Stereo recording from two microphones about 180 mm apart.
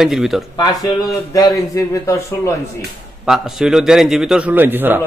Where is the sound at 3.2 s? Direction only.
Centre (ahead or behind).